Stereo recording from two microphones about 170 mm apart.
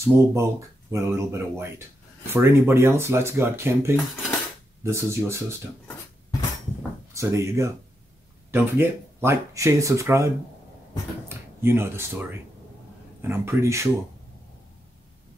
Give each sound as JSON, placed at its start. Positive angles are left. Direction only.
{"t": 0.0, "sound": "speech", "side_deg": -15}
{"t": 7.2, "sound": "speech", "side_deg": -15}